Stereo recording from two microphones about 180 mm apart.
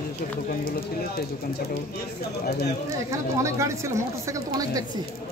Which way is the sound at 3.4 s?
15° right (ahead or behind).